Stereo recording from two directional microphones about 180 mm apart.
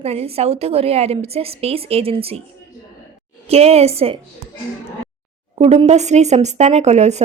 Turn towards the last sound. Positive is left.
turn(degrees=-40)  # may be behind; listen again after turning